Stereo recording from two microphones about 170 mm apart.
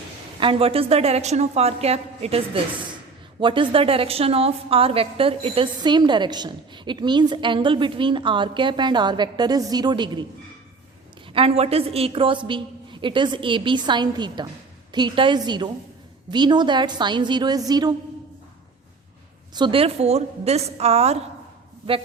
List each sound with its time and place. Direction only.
0.3 s a woman's voice: 30° right (ahead or behind)
11.3 s a woman's voice: 35° right (ahead or behind)
19.5 s a woman's voice: 30° right (ahead or behind)